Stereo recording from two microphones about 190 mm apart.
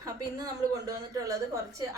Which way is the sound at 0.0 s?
15° right (ahead or behind).